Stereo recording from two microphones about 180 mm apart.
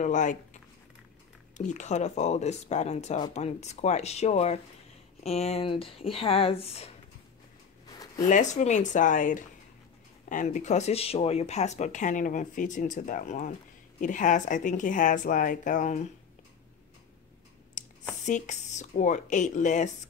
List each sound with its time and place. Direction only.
0.0 s speech: 45° left (ahead or behind)
1.7 s speech: 40° left (ahead or behind)
8.3 s speech: 40° left (ahead or behind)
17.8 s a sound: 45° left (ahead or behind)
18.2 s speech: 40° left (ahead or behind)